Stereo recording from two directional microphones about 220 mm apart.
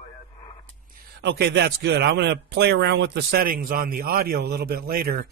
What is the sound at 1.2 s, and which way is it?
Speech, 50° right (ahead or behind).